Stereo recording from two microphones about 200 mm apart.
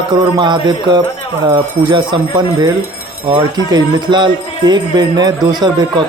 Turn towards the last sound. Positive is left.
turn(degrees=-20)  # may be behind; listen again after turning